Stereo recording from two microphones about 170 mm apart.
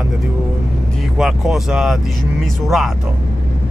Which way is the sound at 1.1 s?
Centre (ahead or behind).